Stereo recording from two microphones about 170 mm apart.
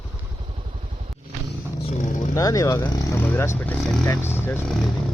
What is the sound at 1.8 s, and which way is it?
Speech, 45° left (ahead or behind).